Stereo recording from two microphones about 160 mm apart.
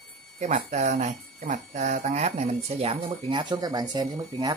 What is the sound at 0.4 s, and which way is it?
Speech, 50° right (ahead or behind).